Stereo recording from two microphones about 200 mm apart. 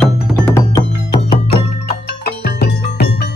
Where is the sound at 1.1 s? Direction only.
30° left (ahead or behind).